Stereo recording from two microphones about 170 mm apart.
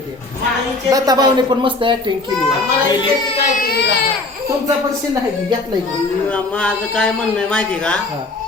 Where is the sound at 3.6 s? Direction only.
70° left (ahead or behind).